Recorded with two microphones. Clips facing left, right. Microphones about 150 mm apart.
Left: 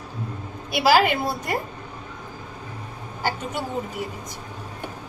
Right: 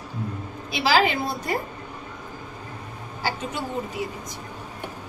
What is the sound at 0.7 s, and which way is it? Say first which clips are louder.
Speech: left 3 dB; 55° left (ahead or behind).